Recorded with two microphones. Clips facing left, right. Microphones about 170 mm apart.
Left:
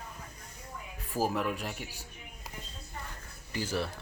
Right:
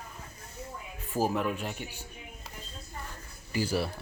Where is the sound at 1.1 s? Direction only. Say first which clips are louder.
Right 2 dB; 5° left (ahead or behind).